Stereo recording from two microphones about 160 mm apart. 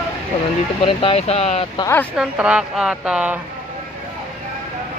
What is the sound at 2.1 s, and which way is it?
Speech, 5° right (ahead or behind).